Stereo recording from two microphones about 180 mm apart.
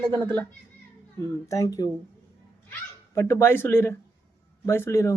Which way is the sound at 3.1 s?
15° left (ahead or behind).